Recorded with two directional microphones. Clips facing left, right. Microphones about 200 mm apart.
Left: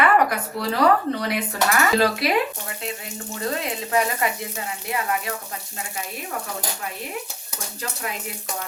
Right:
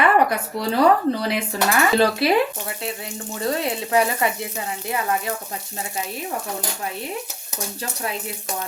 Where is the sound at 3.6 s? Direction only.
30° right (ahead or behind).